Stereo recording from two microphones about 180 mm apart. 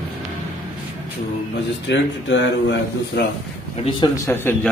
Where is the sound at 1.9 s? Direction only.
90° left.